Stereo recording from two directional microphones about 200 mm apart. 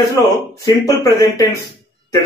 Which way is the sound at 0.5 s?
20° left (ahead or behind).